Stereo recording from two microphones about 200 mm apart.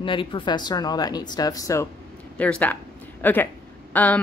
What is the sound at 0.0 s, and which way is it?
Speech, 25° left (ahead or behind).